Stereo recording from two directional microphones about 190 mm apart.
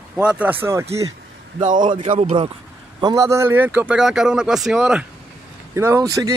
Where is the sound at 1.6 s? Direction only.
45° right (ahead or behind).